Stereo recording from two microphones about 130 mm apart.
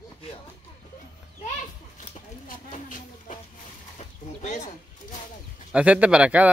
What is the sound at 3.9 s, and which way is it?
Bird, 65° left (ahead or behind).